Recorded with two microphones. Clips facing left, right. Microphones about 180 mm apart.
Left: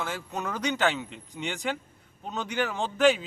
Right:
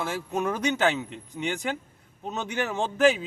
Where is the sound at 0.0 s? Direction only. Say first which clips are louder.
Right 5 dB; 10° right (ahead or behind).